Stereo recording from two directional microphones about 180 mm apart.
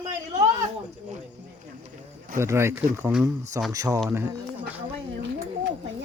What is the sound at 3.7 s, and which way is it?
Speech, 20° right (ahead or behind).